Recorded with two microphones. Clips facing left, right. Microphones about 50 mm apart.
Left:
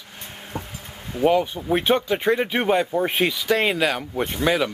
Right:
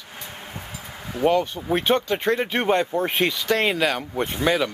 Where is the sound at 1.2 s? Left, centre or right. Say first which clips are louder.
Left 1 dB; centre.